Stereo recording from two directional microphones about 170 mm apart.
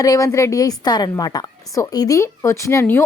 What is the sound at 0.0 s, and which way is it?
A woman's voice, 20° left (ahead or behind).